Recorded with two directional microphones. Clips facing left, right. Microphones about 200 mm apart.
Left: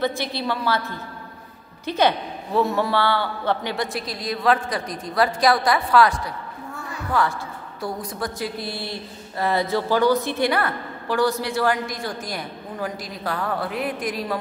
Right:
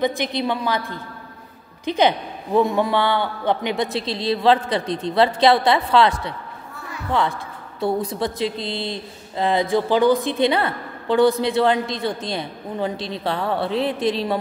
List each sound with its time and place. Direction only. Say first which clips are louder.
0.0 s a woman's voice: right 3 dB; 15° right (ahead or behind)